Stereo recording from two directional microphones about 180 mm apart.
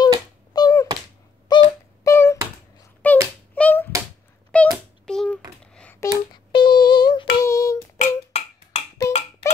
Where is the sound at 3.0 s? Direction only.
10° left (ahead or behind).